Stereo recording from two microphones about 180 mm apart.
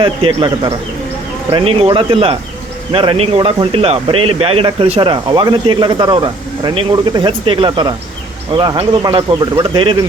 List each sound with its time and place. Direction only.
0.0 s speech: 30° right (ahead or behind)